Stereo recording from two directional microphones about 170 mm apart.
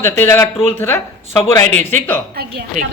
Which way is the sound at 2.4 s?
60° right (ahead or behind).